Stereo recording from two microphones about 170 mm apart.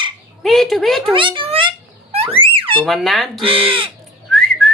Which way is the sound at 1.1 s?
30° right (ahead or behind).